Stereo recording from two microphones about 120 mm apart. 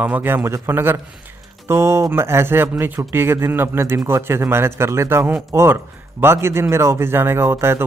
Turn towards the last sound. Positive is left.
turn(degrees=-20)  # may be behind; listen again after turning